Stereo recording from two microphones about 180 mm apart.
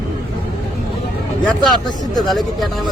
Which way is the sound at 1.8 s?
Centre (ahead or behind).